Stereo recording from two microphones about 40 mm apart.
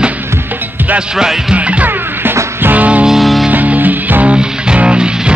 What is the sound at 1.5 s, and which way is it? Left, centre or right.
Music, right.